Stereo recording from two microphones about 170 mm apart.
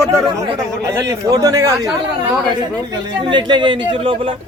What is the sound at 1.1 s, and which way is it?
Speech, 20° right (ahead or behind).